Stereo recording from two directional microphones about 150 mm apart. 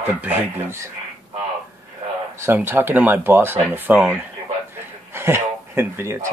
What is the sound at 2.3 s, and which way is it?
Speech, 15° right (ahead or behind).